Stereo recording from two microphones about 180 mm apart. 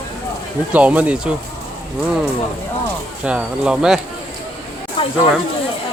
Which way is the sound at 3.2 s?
5° right (ahead or behind).